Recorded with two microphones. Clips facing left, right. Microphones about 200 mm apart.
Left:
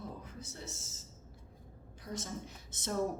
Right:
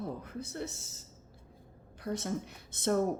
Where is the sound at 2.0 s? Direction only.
60° right (ahead or behind).